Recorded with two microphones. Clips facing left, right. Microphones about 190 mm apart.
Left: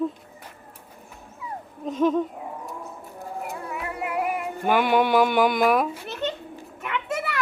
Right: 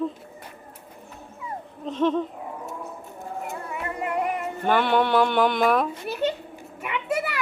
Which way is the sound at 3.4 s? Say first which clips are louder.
Right 1 dB; centre (ahead or behind).